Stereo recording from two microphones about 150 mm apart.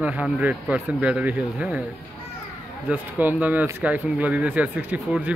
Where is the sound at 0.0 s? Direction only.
10° right (ahead or behind).